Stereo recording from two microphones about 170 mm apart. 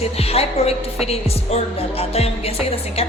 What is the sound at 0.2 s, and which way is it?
Music, 35° left (ahead or behind).